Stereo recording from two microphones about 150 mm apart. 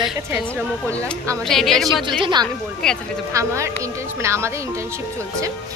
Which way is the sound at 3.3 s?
20° right (ahead or behind).